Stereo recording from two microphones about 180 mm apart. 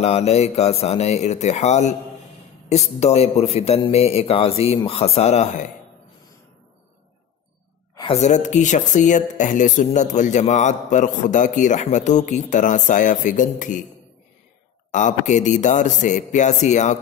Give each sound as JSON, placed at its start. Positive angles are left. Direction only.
{"t": 0.0, "sound": "a man's voice", "side_deg": 35}
{"t": 8.1, "sound": "speech", "side_deg": 40}
{"t": 14.9, "sound": "speech", "side_deg": 45}